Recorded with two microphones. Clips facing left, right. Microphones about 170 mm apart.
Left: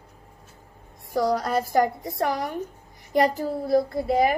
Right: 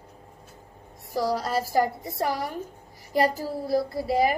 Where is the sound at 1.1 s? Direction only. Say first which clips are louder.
Left 3 dB; centre (ahead or behind).